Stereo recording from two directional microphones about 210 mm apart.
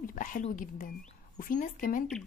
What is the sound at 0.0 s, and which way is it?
Speech, 40° left (ahead or behind).